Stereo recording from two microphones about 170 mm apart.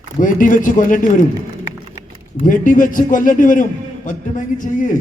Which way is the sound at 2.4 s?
50° left (ahead or behind).